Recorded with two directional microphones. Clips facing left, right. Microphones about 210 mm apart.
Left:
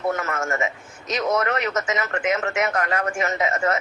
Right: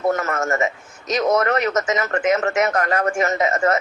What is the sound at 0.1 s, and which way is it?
A man's voice, 40° right (ahead or behind).